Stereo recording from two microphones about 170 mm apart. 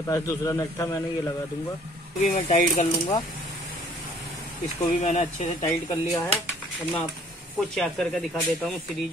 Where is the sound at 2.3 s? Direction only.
45° left (ahead or behind).